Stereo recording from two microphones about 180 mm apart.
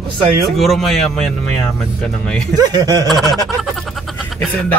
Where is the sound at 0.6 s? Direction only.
Centre (ahead or behind).